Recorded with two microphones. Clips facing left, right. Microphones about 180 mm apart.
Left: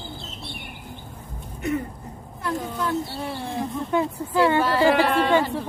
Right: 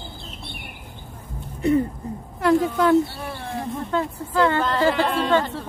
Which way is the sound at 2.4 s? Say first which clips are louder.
Right 9 dB; 80° right.